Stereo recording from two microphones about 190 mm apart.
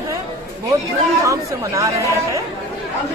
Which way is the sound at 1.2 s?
15° right (ahead or behind).